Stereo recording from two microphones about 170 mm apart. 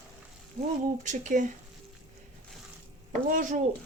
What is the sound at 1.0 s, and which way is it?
Speech, 45° right (ahead or behind).